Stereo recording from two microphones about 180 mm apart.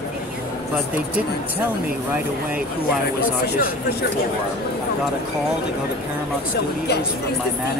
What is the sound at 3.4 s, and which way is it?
Speech, 65° left (ahead or behind).